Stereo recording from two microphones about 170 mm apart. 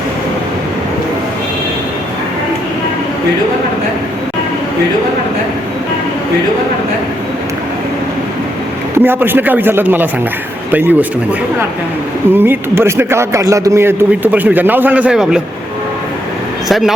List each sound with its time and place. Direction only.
9.0 s a man's voice: 10° right (ahead or behind)
12.3 s a man's voice: 10° right (ahead or behind)
16.6 s speech: centre (ahead or behind)